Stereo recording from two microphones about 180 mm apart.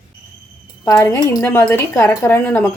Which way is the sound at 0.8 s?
20° left (ahead or behind).